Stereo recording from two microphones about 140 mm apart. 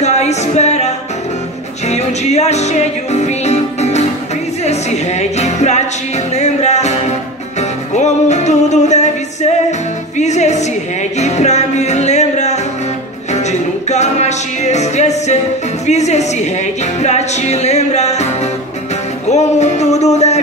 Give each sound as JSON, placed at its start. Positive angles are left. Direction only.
{"t": 0.0, "sound": "music", "side_deg": 55}
{"t": 5.2, "sound": "music", "side_deg": 55}
{"t": 15.9, "sound": "a woman's voice", "side_deg": 55}
{"t": 17.0, "sound": "music", "side_deg": 55}